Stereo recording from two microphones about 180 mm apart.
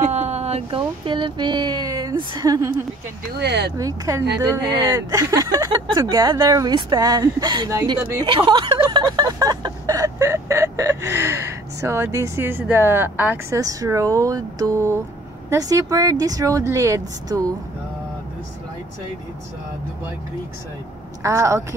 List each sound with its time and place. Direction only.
0.1 s speech: 35° right (ahead or behind); by 2.7 s 20° right (ahead or behind)
3.3 s speech: 65° right (ahead or behind)
3.7 s speech: 20° right (ahead or behind)
21.2 s speech: 15° right (ahead or behind)